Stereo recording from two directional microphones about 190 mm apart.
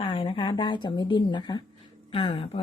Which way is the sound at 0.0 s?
30° left (ahead or behind).